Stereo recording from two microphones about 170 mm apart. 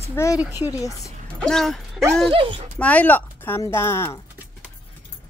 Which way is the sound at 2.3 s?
30° right (ahead or behind).